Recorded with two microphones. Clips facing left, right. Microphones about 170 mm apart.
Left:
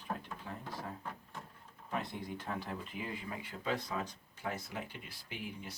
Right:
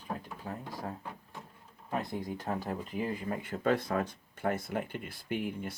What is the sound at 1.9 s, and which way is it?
Speech, 40° right (ahead or behind).